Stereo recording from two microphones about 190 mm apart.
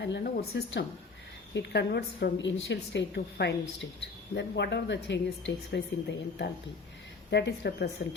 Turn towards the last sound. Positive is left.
turn(degrees=60)  # may be behind; listen again after turning